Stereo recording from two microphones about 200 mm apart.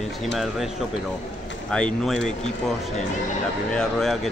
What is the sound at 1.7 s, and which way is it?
Speech, 5° left (ahead or behind).